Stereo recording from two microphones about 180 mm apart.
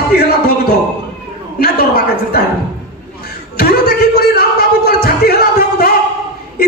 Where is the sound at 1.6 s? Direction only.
60° left (ahead or behind).